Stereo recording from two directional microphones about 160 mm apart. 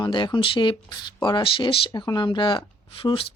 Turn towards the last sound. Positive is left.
turn(degrees=35)  # may be behind; listen again after turning